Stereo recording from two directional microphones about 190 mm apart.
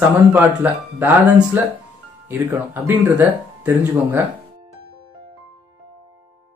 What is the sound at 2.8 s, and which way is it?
Speech, 10° right (ahead or behind).